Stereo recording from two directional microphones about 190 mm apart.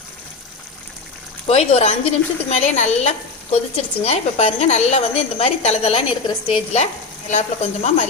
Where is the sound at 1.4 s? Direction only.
35° left (ahead or behind).